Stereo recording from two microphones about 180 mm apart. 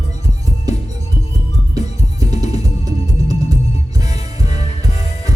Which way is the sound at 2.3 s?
35° left (ahead or behind).